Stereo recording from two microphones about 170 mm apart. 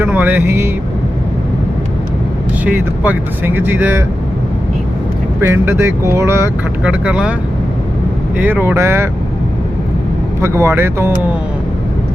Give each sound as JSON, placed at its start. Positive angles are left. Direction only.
{"t": 0.0, "sound": "speech", "side_deg": -10}
{"t": 2.6, "sound": "speech", "side_deg": -10}
{"t": 5.4, "sound": "speech", "side_deg": -15}
{"t": 8.4, "sound": "speech", "side_deg": -10}
{"t": 10.4, "sound": "speech", "side_deg": -15}